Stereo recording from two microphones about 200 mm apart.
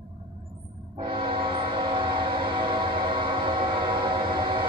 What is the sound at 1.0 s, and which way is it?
Train, 25° right (ahead or behind).